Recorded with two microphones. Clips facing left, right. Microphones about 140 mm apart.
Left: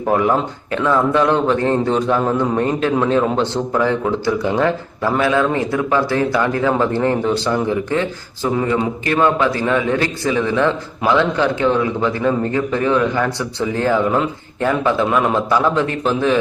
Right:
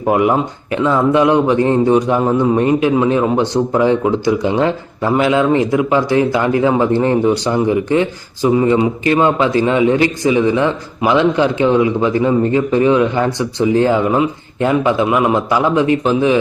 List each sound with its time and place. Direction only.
0.1 s a man's voice: 15° right (ahead or behind)